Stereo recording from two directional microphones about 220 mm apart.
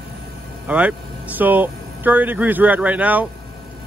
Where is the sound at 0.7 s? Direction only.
5° right (ahead or behind).